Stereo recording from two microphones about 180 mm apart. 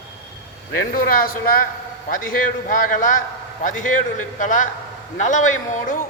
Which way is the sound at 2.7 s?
45° left (ahead or behind).